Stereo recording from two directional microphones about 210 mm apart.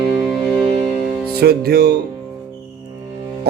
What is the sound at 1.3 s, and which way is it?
Speech, 50° right (ahead or behind).